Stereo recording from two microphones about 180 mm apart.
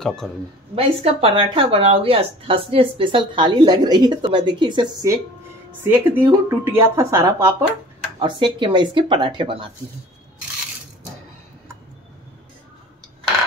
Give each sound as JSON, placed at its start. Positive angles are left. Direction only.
{"t": 0.0, "sound": "speech", "side_deg": 5}
{"t": 0.7, "sound": "speech", "side_deg": -30}
{"t": 8.2, "sound": "speech", "side_deg": -25}